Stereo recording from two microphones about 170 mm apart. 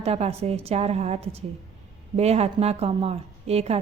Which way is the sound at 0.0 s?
35° right (ahead or behind).